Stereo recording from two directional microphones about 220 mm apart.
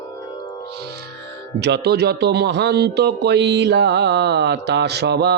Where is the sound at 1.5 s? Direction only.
50° right (ahead or behind).